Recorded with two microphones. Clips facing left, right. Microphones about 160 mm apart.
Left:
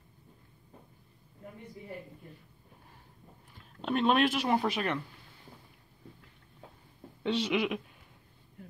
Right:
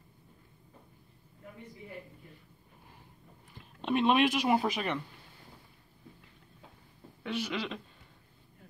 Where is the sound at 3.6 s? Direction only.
Centre (ahead or behind).